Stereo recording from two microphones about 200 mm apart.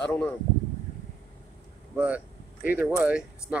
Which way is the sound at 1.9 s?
10° right (ahead or behind).